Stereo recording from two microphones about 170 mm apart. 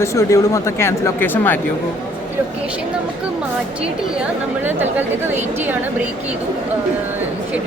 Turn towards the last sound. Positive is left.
turn(degrees=-10)  # may be behind; listen again after turning